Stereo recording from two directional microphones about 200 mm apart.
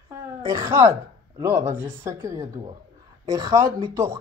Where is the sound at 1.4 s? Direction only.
10° right (ahead or behind).